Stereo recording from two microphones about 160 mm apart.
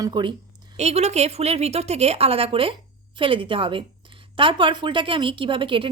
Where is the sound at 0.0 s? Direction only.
30° right (ahead or behind).